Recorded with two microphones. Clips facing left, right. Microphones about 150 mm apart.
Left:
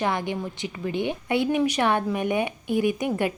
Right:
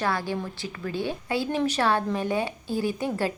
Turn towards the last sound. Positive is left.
turn(degrees=15)  # may be behind; listen again after turning